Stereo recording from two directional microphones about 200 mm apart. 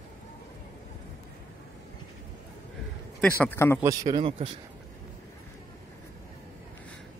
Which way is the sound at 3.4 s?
10° left (ahead or behind).